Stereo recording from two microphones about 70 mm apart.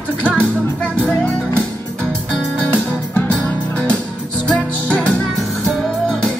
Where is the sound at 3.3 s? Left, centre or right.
Centre.